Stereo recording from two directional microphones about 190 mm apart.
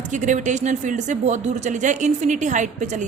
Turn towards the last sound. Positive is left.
turn(degrees=-40)  # may be behind; listen again after turning